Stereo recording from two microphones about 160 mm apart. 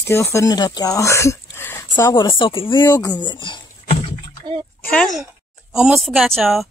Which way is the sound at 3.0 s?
25° left (ahead or behind).